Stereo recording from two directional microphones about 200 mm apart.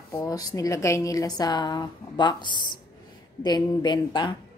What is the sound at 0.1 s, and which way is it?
A woman's voice, 15° left (ahead or behind).